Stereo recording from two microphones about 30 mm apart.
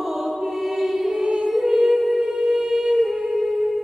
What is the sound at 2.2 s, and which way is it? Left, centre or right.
Music, right.